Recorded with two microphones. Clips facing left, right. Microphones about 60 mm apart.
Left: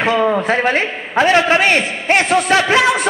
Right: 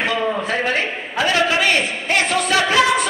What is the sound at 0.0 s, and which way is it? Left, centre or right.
A man's voice, left.